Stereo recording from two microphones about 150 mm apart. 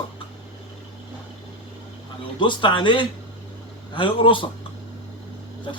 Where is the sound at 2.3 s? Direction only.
30° left (ahead or behind).